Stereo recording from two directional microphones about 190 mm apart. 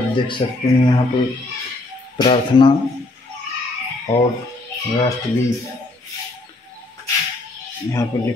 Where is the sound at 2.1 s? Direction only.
25° left (ahead or behind).